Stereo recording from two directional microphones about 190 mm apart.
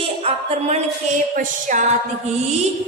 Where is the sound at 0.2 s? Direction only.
35° right (ahead or behind).